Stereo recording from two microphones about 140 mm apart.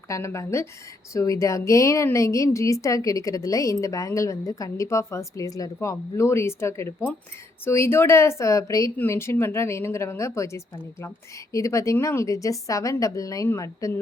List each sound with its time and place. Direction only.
0.1 s a woman's voice: 20° left (ahead or behind)